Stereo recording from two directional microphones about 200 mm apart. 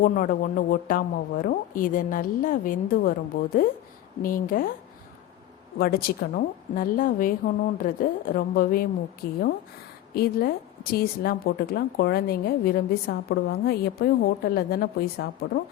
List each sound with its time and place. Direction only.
0.0 s a woman's voice: 45° left (ahead or behind)
5.8 s a woman's voice: 45° left (ahead or behind)